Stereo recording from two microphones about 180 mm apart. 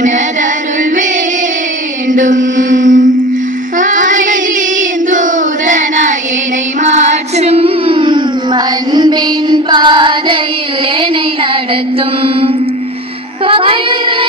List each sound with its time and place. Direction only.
2.0 s mantra: 45° right (ahead or behind)
3.7 s child singing: 45° right (ahead or behind)
6.8 s music: 40° right (ahead or behind)
13.5 s music: 30° right (ahead or behind)